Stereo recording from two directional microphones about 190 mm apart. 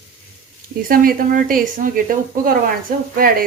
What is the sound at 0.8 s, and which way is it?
A woman's voice, 50° right (ahead or behind).